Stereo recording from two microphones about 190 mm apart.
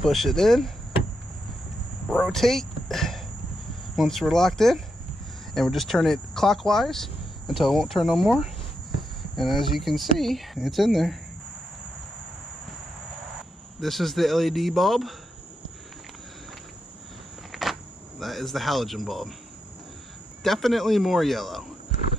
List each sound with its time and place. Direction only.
0.0 s speech: centre (ahead or behind)
2.0 s speech: centre (ahead or behind)
13.7 s speech: centre (ahead or behind)
17.5 s a sound: centre (ahead or behind)
18.2 s speech: centre (ahead or behind)
20.4 s speech: centre (ahead or behind)